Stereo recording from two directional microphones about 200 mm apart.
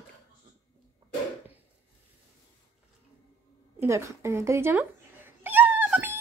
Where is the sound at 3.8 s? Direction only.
15° right (ahead or behind).